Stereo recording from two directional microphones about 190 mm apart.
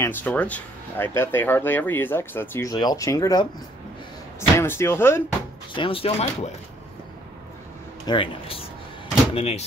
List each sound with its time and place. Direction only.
0.0 s speech: 10° left (ahead or behind)
5.7 s speech: 25° left (ahead or behind)
8.1 s speech: 30° left (ahead or behind)